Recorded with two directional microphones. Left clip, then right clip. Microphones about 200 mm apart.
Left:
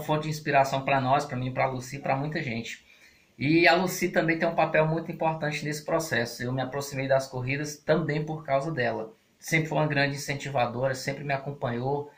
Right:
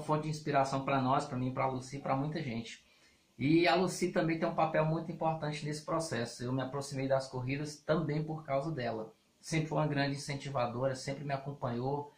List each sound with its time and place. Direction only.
0.1 s speech: 5° right (ahead or behind)